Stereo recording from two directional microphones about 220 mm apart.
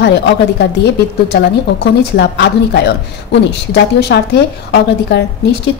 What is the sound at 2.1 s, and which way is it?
A woman's voice, 50° left (ahead or behind).